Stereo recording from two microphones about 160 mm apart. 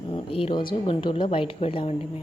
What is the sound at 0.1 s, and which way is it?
Speech, 35° left (ahead or behind).